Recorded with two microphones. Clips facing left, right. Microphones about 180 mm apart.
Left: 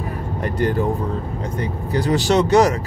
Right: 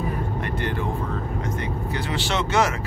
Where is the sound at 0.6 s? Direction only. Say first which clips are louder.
Left 9 dB; 40° left (ahead or behind).